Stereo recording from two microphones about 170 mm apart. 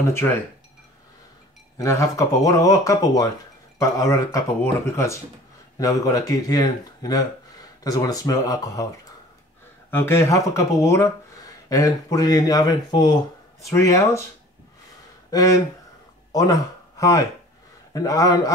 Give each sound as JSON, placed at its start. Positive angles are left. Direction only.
{"t": 0.0, "sound": "speech", "side_deg": 15}
{"t": 1.8, "sound": "speech", "side_deg": 20}
{"t": 9.8, "sound": "speech", "side_deg": 10}
{"t": 15.3, "sound": "speech", "side_deg": 20}